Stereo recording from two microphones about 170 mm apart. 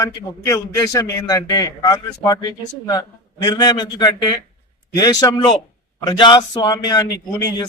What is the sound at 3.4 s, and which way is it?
A man's voice, 25° left (ahead or behind).